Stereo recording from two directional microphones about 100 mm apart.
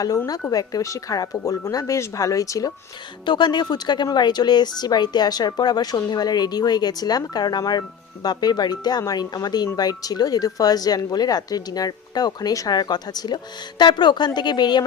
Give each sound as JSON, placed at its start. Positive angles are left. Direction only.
{"t": 0.5, "sound": "speech", "side_deg": 35}
{"t": 3.2, "sound": "speech", "side_deg": 50}